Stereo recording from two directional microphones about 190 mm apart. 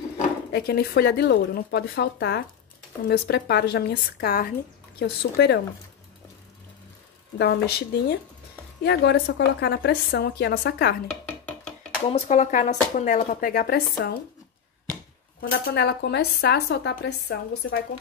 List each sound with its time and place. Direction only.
0.5 s speech: 55° left (ahead or behind)
7.3 s speech: 60° left (ahead or behind)
11.2 s music: 5° left (ahead or behind)
12.1 s speech: 40° left (ahead or behind)
15.5 s speech: 60° left (ahead or behind); by 17.8 s 75° left (ahead or behind)